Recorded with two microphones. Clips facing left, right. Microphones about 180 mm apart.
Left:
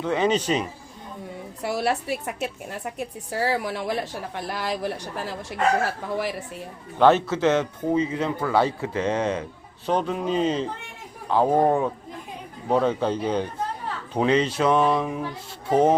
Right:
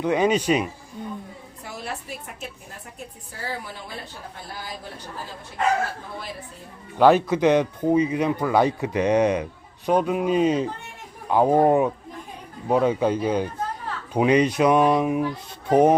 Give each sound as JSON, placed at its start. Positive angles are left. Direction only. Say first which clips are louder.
{"t": 0.0, "sound": "a man's voice", "louder": "right 2 dB", "side_deg": -10}
{"t": 1.6, "sound": "a woman's voice", "louder": "left 10 dB", "side_deg": 75}
{"t": 7.3, "sound": "a man's voice", "louder": "right 3 dB", "side_deg": -15}